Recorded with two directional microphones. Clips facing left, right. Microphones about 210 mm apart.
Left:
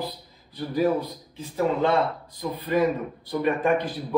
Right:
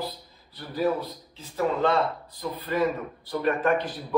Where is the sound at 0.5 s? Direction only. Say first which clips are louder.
Left 3 dB; 15° left (ahead or behind).